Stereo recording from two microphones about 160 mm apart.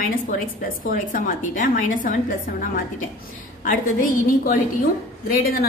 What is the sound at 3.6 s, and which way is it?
A woman's voice, 60° left (ahead or behind).